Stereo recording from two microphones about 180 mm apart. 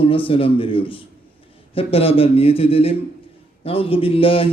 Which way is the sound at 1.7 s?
30° left (ahead or behind).